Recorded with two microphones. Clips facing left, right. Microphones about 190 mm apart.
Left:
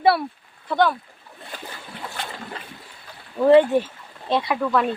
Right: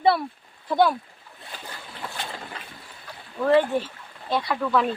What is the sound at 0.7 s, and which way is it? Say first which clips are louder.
Speech: even; 10° right (ahead or behind).